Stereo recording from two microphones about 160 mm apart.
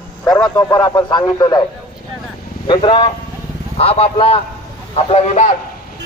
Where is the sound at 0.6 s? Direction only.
20° left (ahead or behind).